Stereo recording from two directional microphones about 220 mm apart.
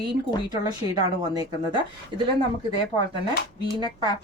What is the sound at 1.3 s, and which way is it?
Speech, 20° right (ahead or behind).